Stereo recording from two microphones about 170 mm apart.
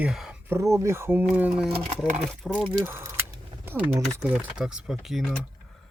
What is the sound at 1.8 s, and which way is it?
Speech, 45° right (ahead or behind).